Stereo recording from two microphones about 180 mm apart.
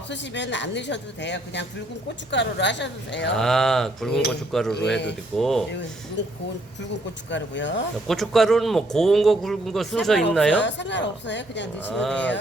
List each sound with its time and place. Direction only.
0.1 s a woman's voice: 80° left
3.3 s a man's voice: 5° left (ahead or behind)
6.2 s a woman's voice: 75° left (ahead or behind)
8.0 s a man's voice: centre (ahead or behind)
10.6 s speech: 80° left
11.9 s a man's voice: 5° left (ahead or behind)